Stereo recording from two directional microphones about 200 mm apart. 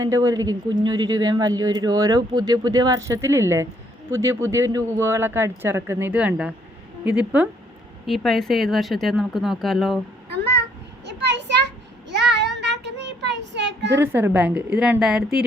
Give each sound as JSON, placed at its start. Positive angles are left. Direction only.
{"t": 0.0, "sound": "a man's voice", "side_deg": -15}
{"t": 11.0, "sound": "a sound", "side_deg": -60}
{"t": 12.0, "sound": "child singing", "side_deg": -60}
{"t": 14.0, "sound": "speech", "side_deg": -10}